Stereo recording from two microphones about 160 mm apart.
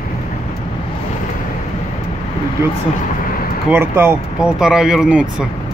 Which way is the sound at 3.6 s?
15° right (ahead or behind).